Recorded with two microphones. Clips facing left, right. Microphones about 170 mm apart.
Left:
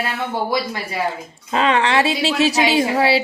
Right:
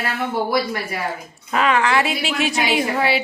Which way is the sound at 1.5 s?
30° left (ahead or behind).